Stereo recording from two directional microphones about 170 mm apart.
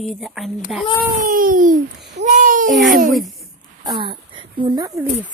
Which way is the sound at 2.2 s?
50° right (ahead or behind).